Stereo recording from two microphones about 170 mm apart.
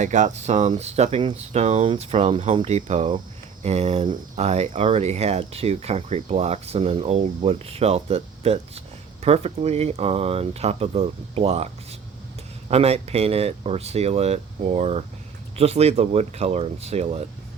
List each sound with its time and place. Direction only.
0.0 s speech: 45° right (ahead or behind)